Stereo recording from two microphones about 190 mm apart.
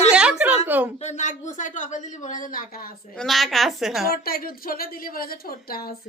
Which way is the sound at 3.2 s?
Centre (ahead or behind).